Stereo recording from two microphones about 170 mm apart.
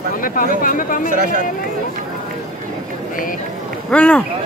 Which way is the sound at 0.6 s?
55° left (ahead or behind).